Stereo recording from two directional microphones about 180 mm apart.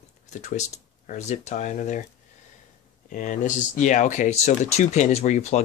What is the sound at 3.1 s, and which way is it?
Speech, 45° left (ahead or behind).